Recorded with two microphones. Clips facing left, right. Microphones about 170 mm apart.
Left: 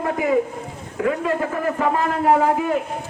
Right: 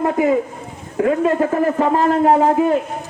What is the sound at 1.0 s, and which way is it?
A man's voice, 35° right (ahead or behind).